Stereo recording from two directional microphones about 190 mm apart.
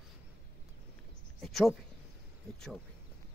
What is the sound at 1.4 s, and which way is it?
Speech, centre (ahead or behind).